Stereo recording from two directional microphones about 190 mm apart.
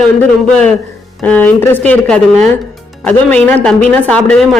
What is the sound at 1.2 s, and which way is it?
A woman's voice, 10° left (ahead or behind).